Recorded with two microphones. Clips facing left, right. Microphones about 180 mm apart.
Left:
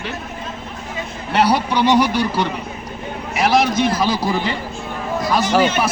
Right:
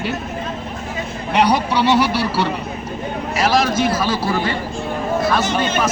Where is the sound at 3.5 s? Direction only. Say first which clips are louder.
Left 1 dB; 20° left (ahead or behind).